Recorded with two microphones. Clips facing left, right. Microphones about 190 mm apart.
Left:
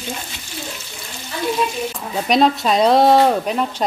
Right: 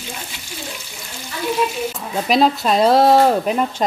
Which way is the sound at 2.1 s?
Centre (ahead or behind).